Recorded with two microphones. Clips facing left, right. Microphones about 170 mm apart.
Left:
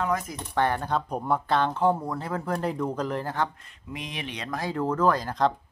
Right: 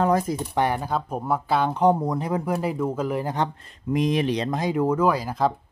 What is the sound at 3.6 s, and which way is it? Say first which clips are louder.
Speech: right 14 dB; 40° right (ahead or behind).